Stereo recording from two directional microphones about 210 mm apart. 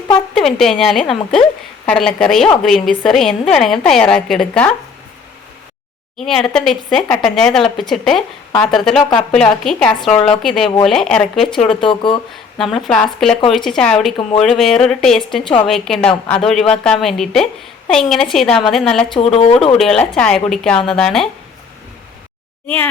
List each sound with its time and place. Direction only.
0.6 s a woman's voice: centre (ahead or behind)
6.1 s a woman's voice: centre (ahead or behind)
11.8 s speech: 25° left (ahead or behind)
12.7 s a woman's voice: 5° left (ahead or behind)
19.1 s speech: 30° left (ahead or behind)
19.8 s a woman's voice: centre (ahead or behind)
22.6 s speech: 10° left (ahead or behind)